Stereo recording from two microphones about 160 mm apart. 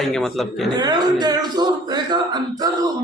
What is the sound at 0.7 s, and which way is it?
Speech, 25° right (ahead or behind).